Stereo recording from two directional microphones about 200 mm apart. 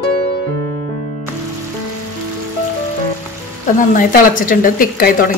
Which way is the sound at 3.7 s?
45° left (ahead or behind).